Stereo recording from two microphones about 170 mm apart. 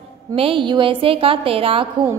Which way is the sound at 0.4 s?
30° right (ahead or behind).